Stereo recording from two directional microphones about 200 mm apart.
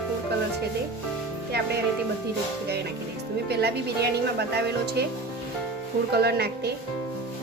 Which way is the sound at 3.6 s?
55° right (ahead or behind).